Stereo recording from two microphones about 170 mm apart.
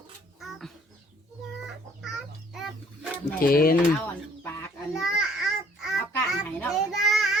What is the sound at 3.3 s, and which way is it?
Speech, 60° left (ahead or behind).